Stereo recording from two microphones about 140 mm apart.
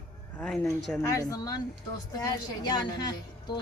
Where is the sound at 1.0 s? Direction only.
25° left (ahead or behind).